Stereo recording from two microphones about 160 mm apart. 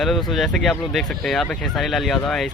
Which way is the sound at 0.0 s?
Centre (ahead or behind).